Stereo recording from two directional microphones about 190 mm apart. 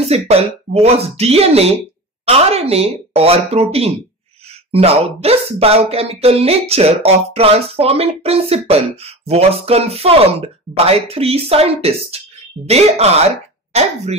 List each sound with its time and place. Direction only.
0.0 s speech: 30° right (ahead or behind)